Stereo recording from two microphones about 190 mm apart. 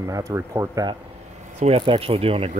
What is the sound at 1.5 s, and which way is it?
Speech, 35° right (ahead or behind).